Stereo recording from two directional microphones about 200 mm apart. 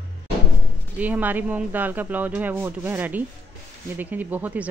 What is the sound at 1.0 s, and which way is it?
Speech, 10° right (ahead or behind).